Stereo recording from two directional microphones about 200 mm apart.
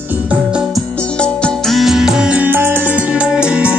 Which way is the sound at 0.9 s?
5° left (ahead or behind).